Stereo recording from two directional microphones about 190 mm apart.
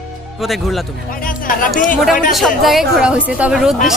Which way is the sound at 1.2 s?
45° left (ahead or behind).